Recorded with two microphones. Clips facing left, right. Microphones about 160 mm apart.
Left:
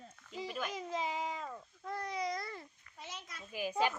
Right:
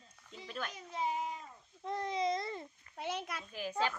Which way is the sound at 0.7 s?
90° left.